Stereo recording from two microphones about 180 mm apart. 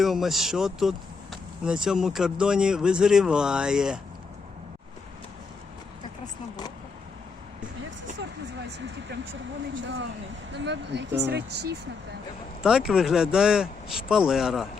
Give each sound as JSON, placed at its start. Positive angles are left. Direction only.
{"t": 0.0, "sound": "speech", "side_deg": 0}
{"t": 9.8, "sound": "speech", "side_deg": -90}
{"t": 10.5, "sound": "speech", "side_deg": -75}
{"t": 12.6, "sound": "speech", "side_deg": -5}